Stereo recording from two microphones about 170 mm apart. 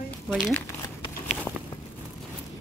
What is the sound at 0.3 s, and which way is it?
Speech, 10° left (ahead or behind).